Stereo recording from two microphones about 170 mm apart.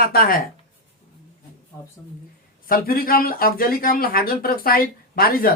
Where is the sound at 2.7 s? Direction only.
60° left (ahead or behind).